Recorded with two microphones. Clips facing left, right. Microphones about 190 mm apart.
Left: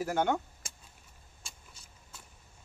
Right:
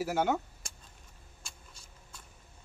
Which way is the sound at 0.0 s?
5° right (ahead or behind).